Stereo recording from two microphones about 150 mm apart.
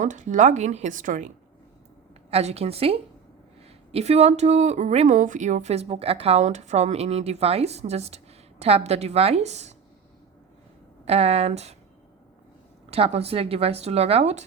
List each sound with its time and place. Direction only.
0.0 s speech: 55° right (ahead or behind)
2.3 s a woman's voice: 45° right (ahead or behind)
11.0 s speech: 45° right (ahead or behind)
12.9 s speech: 40° right (ahead or behind)